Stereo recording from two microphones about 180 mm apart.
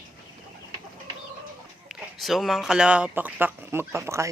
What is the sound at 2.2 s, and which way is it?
Speech, centre (ahead or behind).